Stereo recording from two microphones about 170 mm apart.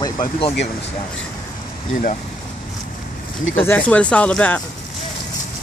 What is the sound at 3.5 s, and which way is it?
Speech, 10° left (ahead or behind).